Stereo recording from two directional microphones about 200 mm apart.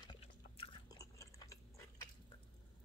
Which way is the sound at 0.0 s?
25° left (ahead or behind).